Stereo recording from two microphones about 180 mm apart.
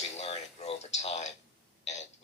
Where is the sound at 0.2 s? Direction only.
35° left (ahead or behind).